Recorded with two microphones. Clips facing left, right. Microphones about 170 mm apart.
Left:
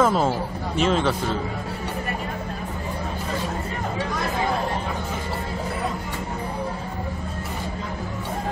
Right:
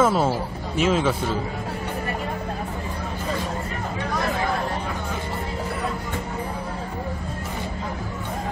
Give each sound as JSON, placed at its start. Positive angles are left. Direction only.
{"t": 0.0, "sound": "speech", "side_deg": -5}